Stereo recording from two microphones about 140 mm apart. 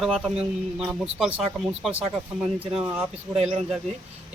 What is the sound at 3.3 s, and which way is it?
Speech, 50° right (ahead or behind).